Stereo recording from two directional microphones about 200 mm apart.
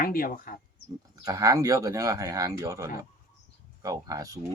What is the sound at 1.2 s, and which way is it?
Speech, 15° right (ahead or behind).